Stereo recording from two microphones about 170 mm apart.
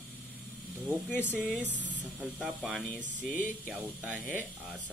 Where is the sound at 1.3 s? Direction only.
10° right (ahead or behind).